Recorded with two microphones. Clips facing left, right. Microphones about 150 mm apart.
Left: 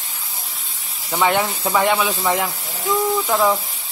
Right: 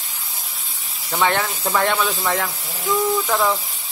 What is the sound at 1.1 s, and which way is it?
Speech, 10° left (ahead or behind).